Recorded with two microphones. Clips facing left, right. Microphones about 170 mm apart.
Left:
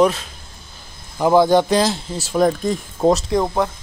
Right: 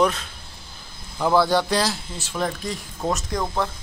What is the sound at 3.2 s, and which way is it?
Speech, 20° left (ahead or behind).